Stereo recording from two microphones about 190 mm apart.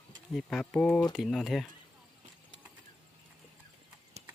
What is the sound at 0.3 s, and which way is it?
Speech, 5° left (ahead or behind).